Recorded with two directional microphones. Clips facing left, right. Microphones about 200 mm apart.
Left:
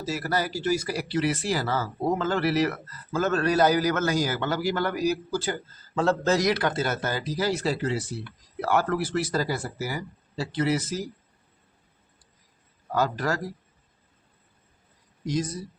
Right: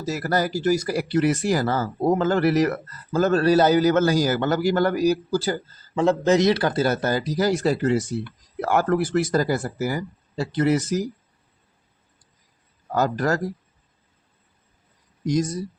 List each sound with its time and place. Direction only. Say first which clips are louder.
0.1 s speech: right 5 dB; 45° right (ahead or behind)
5.9 s speech: right 4 dB; 15° right (ahead or behind); by 10.8 s 45° right (ahead or behind)
12.9 s speech: right 4 dB; 45° right (ahead or behind)
15.3 s speech: right 5 dB; 45° right (ahead or behind)